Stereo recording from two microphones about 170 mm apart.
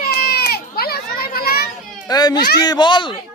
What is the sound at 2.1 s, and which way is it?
Speech, 25° left (ahead or behind).